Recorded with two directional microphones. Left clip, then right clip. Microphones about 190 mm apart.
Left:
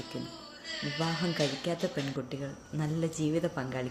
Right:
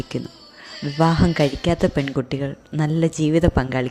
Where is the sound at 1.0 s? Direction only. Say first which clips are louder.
Right 14 dB; 50° right (ahead or behind).